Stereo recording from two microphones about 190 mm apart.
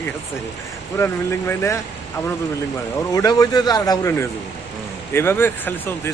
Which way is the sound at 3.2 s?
20° left (ahead or behind).